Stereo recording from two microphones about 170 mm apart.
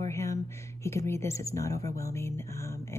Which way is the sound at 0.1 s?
15° left (ahead or behind).